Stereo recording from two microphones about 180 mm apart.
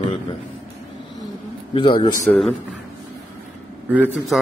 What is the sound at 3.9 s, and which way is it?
Speech, 10° right (ahead or behind).